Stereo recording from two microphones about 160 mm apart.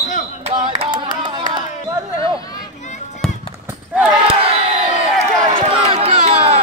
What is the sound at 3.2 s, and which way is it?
Run, 5° left (ahead or behind).